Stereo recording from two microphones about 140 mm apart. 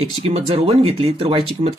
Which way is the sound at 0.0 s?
45° right (ahead or behind).